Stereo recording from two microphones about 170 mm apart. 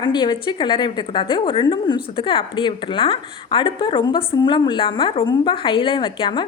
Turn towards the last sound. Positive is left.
turn(degrees=30)  # may be behind; listen again after turning